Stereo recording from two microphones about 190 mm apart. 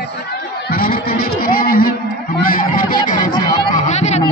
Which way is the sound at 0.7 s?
50° left (ahead or behind).